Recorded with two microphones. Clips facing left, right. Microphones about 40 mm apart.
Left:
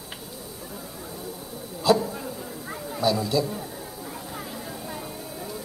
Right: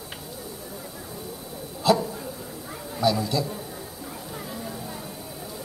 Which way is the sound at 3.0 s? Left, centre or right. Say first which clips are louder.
Even; centre.